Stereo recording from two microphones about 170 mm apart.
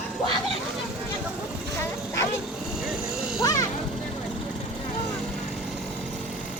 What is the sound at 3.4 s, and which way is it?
Music, 20° left (ahead or behind).